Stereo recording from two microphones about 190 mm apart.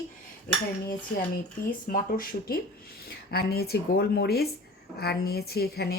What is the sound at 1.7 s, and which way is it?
A woman's voice, 45° left (ahead or behind).